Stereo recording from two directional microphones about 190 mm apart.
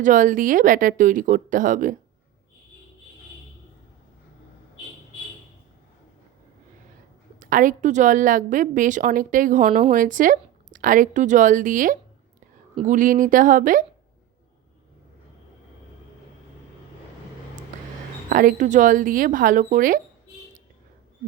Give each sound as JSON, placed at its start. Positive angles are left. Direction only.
{"t": 0.0, "sound": "a woman's voice", "side_deg": -40}
{"t": 7.3, "sound": "a woman's voice", "side_deg": -45}
{"t": 18.3, "sound": "a woman's voice", "side_deg": -45}